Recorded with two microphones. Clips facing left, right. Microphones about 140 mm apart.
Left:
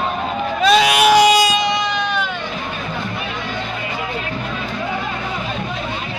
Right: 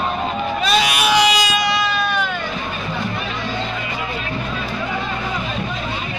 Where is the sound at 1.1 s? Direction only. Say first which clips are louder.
Left 5 dB; 45° left (ahead or behind).